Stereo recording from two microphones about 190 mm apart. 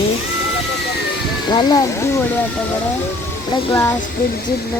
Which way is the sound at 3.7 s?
15° left (ahead or behind).